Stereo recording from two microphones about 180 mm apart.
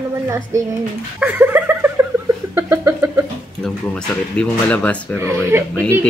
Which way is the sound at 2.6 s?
15° right (ahead or behind).